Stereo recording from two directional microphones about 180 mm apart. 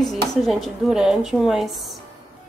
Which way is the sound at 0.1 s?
Centre (ahead or behind).